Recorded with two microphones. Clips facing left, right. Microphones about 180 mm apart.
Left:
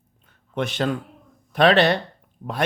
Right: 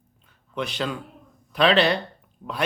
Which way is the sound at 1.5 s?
45° left (ahead or behind).